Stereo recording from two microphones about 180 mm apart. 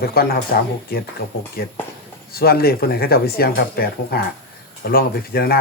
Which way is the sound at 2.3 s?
60° left (ahead or behind).